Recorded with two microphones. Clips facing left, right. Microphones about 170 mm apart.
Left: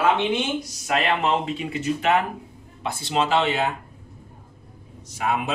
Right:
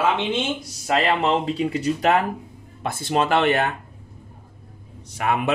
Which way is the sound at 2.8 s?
50° right (ahead or behind).